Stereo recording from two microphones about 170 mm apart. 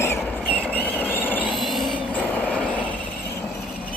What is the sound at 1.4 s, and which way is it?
Train, centre (ahead or behind).